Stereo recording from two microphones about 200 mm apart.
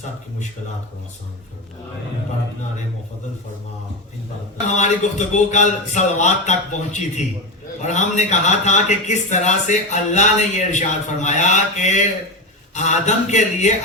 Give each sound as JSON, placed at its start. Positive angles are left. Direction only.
{"t": 4.8, "sound": "a man's voice", "side_deg": 35}